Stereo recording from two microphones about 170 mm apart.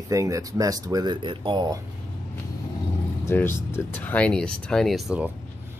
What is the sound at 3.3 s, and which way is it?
Speech, 15° left (ahead or behind).